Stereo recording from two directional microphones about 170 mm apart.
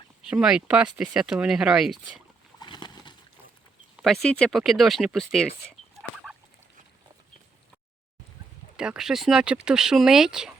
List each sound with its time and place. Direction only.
0.3 s speech: 5° right (ahead or behind)
2.6 s a sound: 25° left (ahead or behind)
3.9 s speech: centre (ahead or behind)
8.7 s speech: 5° right (ahead or behind)